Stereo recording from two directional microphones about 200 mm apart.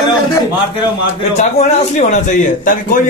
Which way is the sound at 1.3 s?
35° left (ahead or behind).